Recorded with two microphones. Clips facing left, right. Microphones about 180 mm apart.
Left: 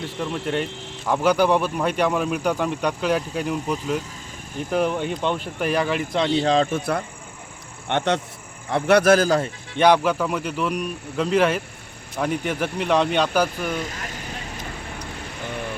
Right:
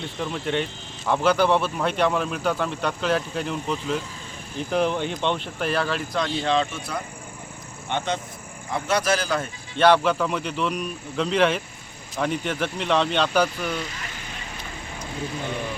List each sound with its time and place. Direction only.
0.2 s speech: 5° left (ahead or behind)
6.4 s a man's voice: 40° left (ahead or behind)
7.9 s a man's voice: 70° left (ahead or behind); by 9.4 s 45° left (ahead or behind)
9.7 s speech: 15° left (ahead or behind)